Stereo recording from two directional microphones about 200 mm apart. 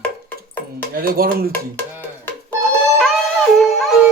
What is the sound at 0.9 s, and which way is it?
Speech, 50° right (ahead or behind).